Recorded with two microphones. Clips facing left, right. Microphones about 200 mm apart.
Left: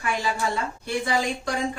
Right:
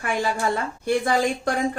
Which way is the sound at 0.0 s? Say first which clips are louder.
Right 2 dB; 50° right (ahead or behind).